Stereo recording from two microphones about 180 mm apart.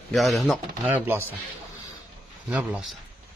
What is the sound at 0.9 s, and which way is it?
Speech, 10° right (ahead or behind).